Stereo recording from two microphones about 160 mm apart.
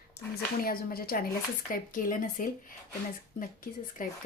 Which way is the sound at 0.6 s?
65° left (ahead or behind).